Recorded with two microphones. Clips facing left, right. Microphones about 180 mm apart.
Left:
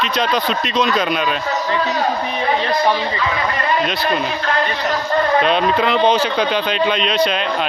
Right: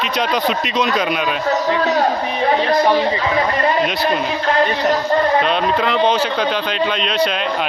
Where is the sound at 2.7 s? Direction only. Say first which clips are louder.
Right 3 dB; 35° right (ahead or behind).